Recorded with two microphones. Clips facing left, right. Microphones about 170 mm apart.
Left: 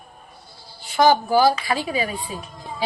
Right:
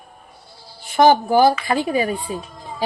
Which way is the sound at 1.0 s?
50° right (ahead or behind).